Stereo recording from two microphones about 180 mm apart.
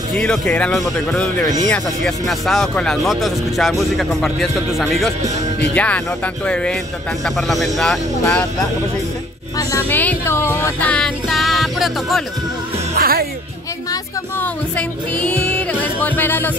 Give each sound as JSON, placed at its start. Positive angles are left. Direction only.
{"t": 0.1, "sound": "speech", "side_deg": 5}
{"t": 9.6, "sound": "speech", "side_deg": 15}
{"t": 13.0, "sound": "music", "side_deg": -55}
{"t": 14.4, "sound": "music", "side_deg": 5}